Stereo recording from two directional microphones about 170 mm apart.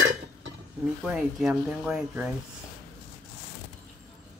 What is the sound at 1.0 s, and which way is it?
Speech, 5° right (ahead or behind).